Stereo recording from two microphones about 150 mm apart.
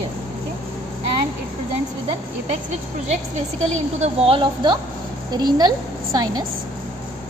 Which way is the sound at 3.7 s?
45° right (ahead or behind).